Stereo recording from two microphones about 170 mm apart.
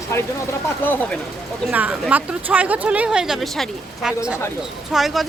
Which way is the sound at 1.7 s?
10° right (ahead or behind).